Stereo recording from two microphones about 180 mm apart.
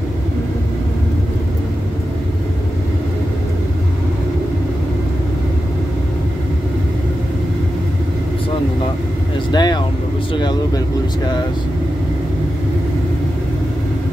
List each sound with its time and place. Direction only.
9.5 s vehicle: 25° left (ahead or behind)